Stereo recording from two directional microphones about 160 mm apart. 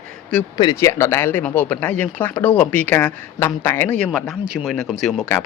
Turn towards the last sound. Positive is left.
turn(degrees=0)  # may be behind; listen again after turning